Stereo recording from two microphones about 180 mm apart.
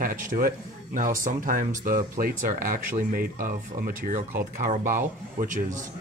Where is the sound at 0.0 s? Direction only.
50° right (ahead or behind).